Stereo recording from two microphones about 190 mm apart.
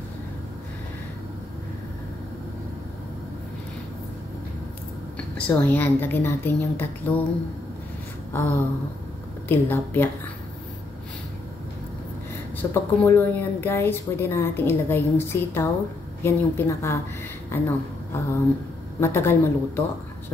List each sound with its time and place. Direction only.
5.1 s a woman's voice: 10° left (ahead or behind)
8.3 s a sound: 10° left (ahead or behind)
9.5 s a woman's voice: 10° left (ahead or behind)
12.6 s a woman's voice: 15° left (ahead or behind)
17.5 s a sound: 10° left (ahead or behind)
18.9 s a woman's voice: 10° left (ahead or behind)